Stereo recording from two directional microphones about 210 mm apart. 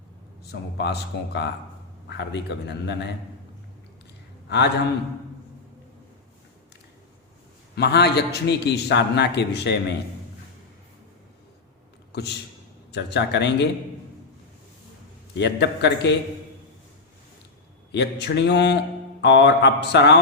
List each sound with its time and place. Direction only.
0.5 s a man's voice: 50° left (ahead or behind)
4.4 s a man's voice: 55° left (ahead or behind)
7.8 s a man's voice: 50° left (ahead or behind)
12.9 s speech: 55° left (ahead or behind)
15.4 s a man's voice: 55° left (ahead or behind)
17.9 s speech: 55° left (ahead or behind)